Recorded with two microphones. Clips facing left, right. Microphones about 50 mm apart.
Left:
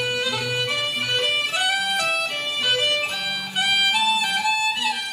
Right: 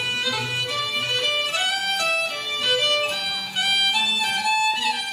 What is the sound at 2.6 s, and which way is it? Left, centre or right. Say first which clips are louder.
Music: right 1 dB; centre.